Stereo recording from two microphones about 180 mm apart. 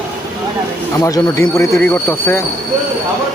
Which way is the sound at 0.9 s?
15° left (ahead or behind).